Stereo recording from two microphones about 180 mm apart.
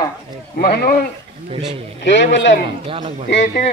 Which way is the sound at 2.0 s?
85° left.